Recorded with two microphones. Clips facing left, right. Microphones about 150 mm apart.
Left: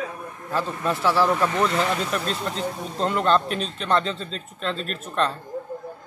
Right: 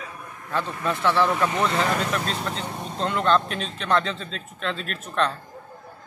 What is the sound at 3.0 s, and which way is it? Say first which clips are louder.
Speech: left 1 dB; 5° left (ahead or behind).